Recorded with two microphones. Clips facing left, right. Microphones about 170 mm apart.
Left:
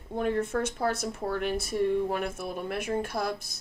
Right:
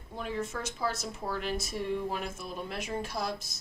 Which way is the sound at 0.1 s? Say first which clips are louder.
Left 8 dB; 55° left (ahead or behind).